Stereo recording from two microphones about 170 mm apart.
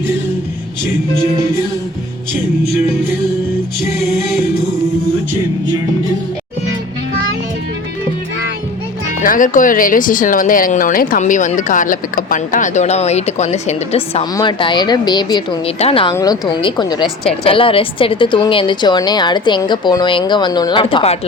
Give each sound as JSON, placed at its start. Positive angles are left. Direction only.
{"t": 9.2, "sound": "a woman's voice", "side_deg": 50}
{"t": 16.1, "sound": "a woman's voice", "side_deg": 20}